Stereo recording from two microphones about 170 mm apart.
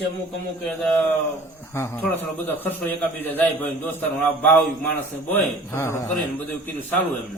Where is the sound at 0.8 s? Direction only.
5° left (ahead or behind).